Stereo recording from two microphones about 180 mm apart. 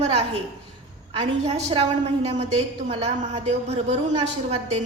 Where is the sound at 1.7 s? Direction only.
35° right (ahead or behind).